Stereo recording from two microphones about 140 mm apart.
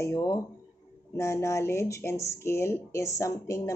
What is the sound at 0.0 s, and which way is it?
Speech, 20° left (ahead or behind).